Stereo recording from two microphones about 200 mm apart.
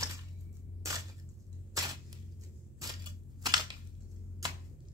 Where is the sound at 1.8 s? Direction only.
20° right (ahead or behind).